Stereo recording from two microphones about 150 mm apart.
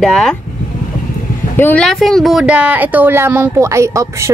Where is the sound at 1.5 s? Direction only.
15° left (ahead or behind).